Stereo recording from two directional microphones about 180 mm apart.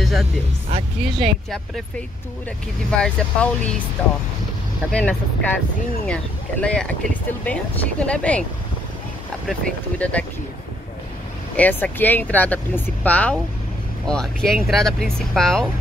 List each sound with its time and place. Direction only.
0.0 s music: centre (ahead or behind)
0.7 s speech: 30° right (ahead or behind)
3.0 s speech: 5° left (ahead or behind)
4.9 s speech: 10° left (ahead or behind)
8.0 s speech: 5° left (ahead or behind)
9.5 s speech: 5° left (ahead or behind)
11.5 s speech: 10° left (ahead or behind)